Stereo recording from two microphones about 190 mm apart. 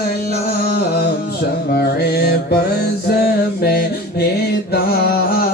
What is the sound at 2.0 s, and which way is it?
Mantra, 55° left (ahead or behind).